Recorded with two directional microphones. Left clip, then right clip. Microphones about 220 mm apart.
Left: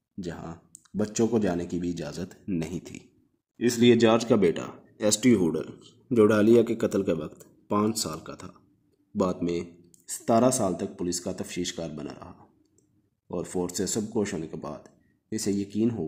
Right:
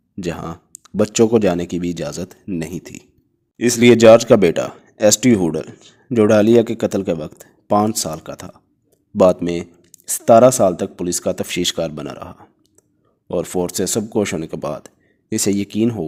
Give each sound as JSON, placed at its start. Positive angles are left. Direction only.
{"t": 0.2, "sound": "speech", "side_deg": -40}